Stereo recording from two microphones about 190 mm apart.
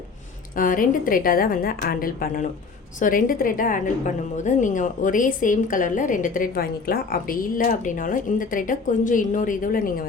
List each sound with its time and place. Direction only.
0.5 s a woman's voice: 45° left (ahead or behind)